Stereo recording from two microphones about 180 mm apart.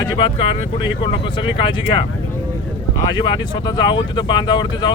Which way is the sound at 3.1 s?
25° left (ahead or behind).